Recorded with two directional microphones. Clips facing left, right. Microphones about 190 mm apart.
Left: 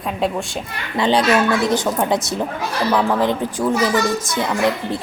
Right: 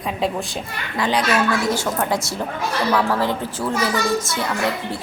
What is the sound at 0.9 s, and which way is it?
A woman's voice, 25° left (ahead or behind).